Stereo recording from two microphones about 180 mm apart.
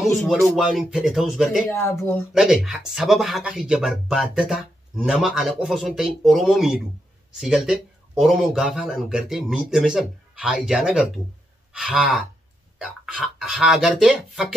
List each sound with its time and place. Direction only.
0.6 s speech: 5° right (ahead or behind)
1.7 s speech: 15° left (ahead or behind)
2.3 s speech: 5° right (ahead or behind)